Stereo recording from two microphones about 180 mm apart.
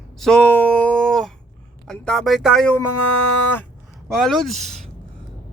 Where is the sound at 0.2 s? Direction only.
5° left (ahead or behind).